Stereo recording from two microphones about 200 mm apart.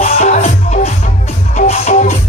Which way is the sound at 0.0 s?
30° left (ahead or behind).